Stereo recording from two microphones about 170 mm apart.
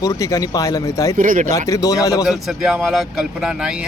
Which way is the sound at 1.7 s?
20° left (ahead or behind).